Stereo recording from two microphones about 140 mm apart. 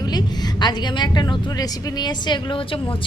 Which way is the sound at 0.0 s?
30° left (ahead or behind).